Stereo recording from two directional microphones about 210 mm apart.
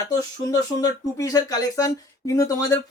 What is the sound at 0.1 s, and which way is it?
Speech, 15° left (ahead or behind).